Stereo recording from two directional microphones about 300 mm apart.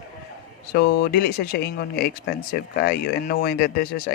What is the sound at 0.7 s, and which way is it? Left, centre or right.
Speech, left.